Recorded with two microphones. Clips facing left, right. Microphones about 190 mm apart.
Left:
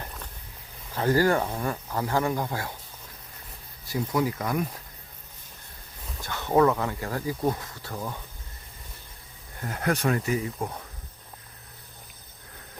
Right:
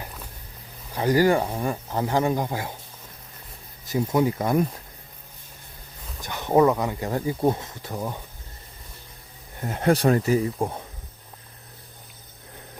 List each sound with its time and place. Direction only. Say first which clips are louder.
0.0 s a sound: right 1 dB; 10° right (ahead or behind)
0.9 s speech: right 3 dB; 15° right (ahead or behind)
3.8 s speech: right 4 dB; 25° right (ahead or behind)
6.2 s speech: right 3 dB; 15° right (ahead or behind)
9.6 s speech: right 6 dB; 25° right (ahead or behind)